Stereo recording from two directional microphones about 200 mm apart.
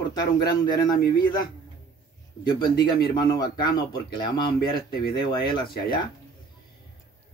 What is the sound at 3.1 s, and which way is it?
Speech, 20° left (ahead or behind).